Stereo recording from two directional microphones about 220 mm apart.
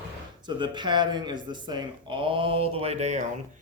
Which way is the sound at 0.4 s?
20° right (ahead or behind).